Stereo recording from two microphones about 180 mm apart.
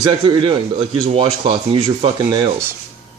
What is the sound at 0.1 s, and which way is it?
Speech, 30° right (ahead or behind).